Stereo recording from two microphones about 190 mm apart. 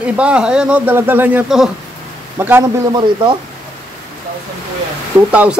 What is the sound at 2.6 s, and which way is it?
Speech, 20° right (ahead or behind).